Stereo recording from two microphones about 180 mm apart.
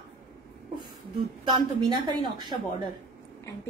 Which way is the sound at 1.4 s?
25° right (ahead or behind).